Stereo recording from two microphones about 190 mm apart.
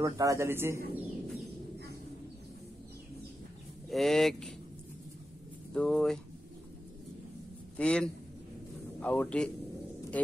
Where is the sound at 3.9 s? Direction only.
Centre (ahead or behind).